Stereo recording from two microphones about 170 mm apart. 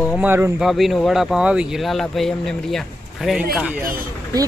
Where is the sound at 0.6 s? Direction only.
Centre (ahead or behind).